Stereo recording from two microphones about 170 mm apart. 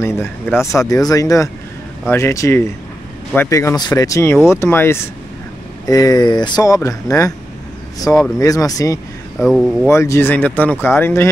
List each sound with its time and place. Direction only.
0.0 s speech: 15° left (ahead or behind)
9.4 s speech: centre (ahead or behind)
9.8 s speech: 15° left (ahead or behind)